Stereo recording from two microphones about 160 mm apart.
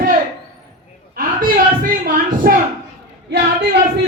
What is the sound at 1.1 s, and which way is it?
Speech, 60° right (ahead or behind).